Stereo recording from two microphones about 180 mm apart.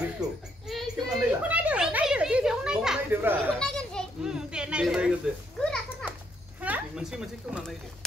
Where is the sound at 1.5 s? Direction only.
10° right (ahead or behind).